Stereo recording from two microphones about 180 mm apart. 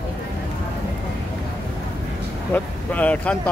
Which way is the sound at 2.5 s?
10° left (ahead or behind).